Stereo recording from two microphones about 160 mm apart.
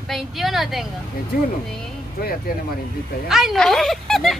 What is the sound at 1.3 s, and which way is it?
Speech, 65° left (ahead or behind).